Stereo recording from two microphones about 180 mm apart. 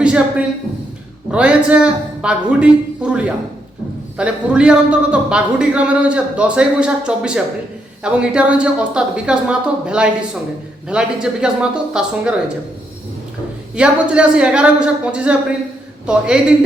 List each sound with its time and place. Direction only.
0.0 s a sound: 5° right (ahead or behind)
1.3 s a man's voice: 5° right (ahead or behind)
13.7 s a man's voice: 5° right (ahead or behind)